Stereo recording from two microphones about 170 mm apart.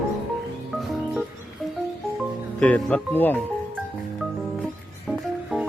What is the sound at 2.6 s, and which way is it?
Speech, 10° left (ahead or behind).